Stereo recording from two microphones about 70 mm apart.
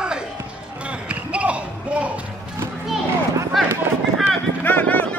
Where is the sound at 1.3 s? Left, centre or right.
Centre.